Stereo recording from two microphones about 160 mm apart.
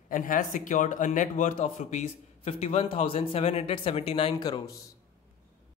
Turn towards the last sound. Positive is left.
turn(degrees=25)  # may be behind; listen again after turning